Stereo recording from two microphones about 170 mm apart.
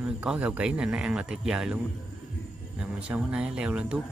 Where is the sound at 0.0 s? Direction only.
5° right (ahead or behind).